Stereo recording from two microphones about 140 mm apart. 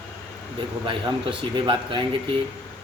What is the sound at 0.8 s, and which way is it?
Speech, 35° right (ahead or behind).